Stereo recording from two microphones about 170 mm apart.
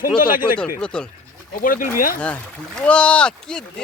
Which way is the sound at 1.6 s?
55° left (ahead or behind).